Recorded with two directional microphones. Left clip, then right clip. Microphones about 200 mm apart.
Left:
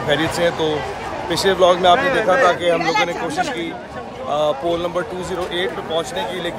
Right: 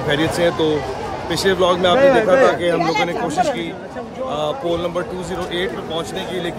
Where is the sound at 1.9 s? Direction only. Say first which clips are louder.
Right 5 dB; 55° right (ahead or behind).